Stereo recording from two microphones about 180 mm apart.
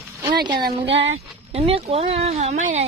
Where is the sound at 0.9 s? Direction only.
85° right.